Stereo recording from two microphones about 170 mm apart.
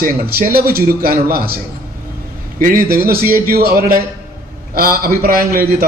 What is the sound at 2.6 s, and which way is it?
A man's voice, 55° right (ahead or behind).